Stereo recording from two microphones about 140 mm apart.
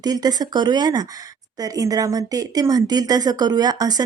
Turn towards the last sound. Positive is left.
turn(degrees=-30)  # may be behind; listen again after turning